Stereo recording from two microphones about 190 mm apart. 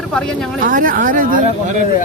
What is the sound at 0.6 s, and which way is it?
Speech, 45° right (ahead or behind).